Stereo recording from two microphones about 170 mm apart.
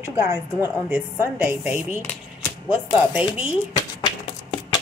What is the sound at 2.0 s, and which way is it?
Speech, 10° left (ahead or behind).